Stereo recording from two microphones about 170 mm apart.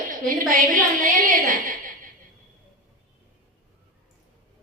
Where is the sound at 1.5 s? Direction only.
50° right (ahead or behind).